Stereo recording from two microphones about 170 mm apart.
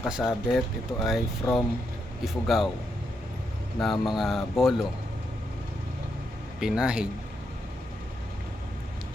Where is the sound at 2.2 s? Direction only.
Centre (ahead or behind).